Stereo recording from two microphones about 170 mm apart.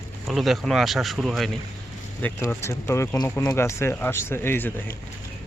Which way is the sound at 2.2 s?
15° left (ahead or behind).